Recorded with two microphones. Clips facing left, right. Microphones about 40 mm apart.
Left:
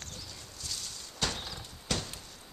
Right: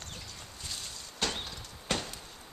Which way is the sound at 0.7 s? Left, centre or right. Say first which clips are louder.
Even; centre.